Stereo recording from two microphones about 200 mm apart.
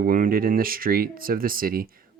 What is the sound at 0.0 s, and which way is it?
Speech, 45° right (ahead or behind).